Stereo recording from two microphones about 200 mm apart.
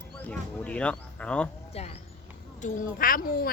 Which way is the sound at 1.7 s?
30° left (ahead or behind).